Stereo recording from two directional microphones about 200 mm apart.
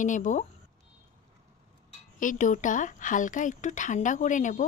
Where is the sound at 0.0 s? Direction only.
40° left (ahead or behind).